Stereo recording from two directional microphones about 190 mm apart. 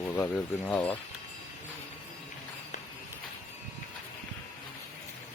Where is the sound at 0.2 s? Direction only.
5° left (ahead or behind).